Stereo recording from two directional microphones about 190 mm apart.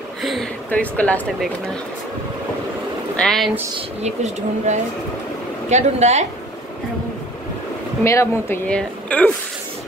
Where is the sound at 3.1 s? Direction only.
Centre (ahead or behind).